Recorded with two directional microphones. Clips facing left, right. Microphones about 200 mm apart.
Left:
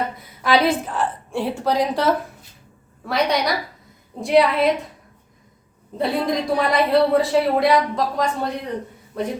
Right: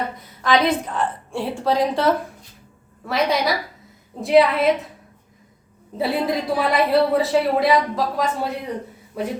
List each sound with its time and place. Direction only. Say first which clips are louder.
0.4 s a woman's voice: even; 10° left (ahead or behind)
6.0 s a woman's voice: even; 5° right (ahead or behind)